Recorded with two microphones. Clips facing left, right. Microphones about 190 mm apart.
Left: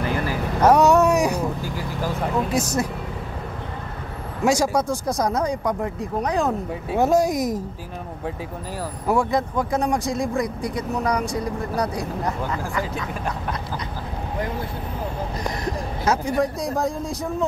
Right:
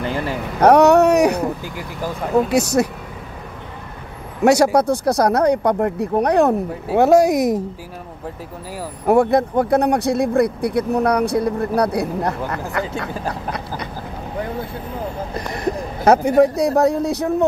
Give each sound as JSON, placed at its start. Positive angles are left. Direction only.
{"t": 0.0, "sound": "vehicle", "side_deg": -30}
{"t": 0.6, "sound": "a sound", "side_deg": -65}
{"t": 2.5, "sound": "speech", "side_deg": -70}
{"t": 4.5, "sound": "speech", "side_deg": -65}
{"t": 9.0, "sound": "speech", "side_deg": -60}
{"t": 15.5, "sound": "speech", "side_deg": -60}